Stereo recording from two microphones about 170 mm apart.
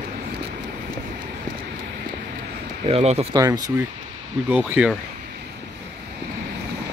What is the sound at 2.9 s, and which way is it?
Speech, 35° right (ahead or behind).